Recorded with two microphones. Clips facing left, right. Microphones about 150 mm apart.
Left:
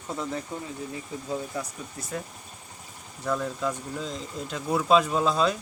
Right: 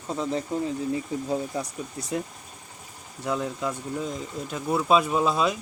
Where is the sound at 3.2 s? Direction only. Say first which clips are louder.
Even; 10° right (ahead or behind).